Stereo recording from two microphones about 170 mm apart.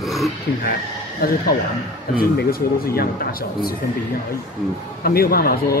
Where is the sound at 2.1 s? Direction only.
60° left (ahead or behind).